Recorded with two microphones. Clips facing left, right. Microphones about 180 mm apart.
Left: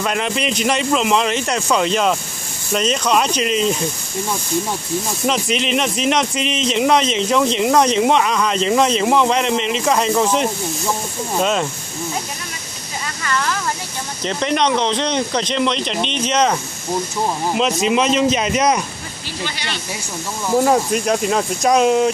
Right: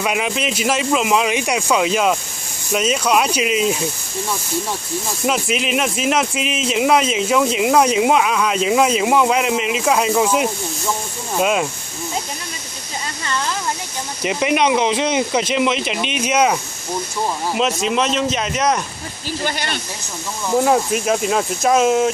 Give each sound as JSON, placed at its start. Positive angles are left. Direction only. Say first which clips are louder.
{"t": 0.0, "sound": "speech", "louder": "even", "side_deg": -5}
{"t": 5.2, "sound": "speech", "louder": "right 1 dB", "side_deg": -5}
{"t": 13.2, "sound": "a sound", "louder": "left 2 dB", "side_deg": -20}
{"t": 14.2, "sound": "speech", "louder": "right 1 dB", "side_deg": -10}
{"t": 17.6, "sound": "speech", "louder": "left 2 dB", "side_deg": 0}
{"t": 19.4, "sound": "speech", "louder": "right 3 dB", "side_deg": -50}
{"t": 20.4, "sound": "speech", "louder": "left 1 dB", "side_deg": 5}